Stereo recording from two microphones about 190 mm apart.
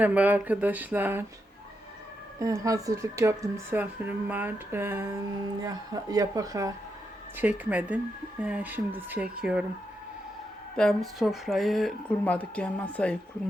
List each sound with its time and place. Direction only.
0.0 s speech: 10° right (ahead or behind)
2.4 s speech: 15° right (ahead or behind)
10.8 s speech: centre (ahead or behind)